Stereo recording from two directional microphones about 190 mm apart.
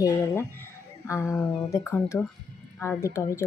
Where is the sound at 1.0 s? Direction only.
15° left (ahead or behind).